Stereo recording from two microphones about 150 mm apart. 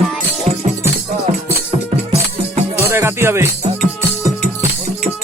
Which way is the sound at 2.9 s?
15° right (ahead or behind).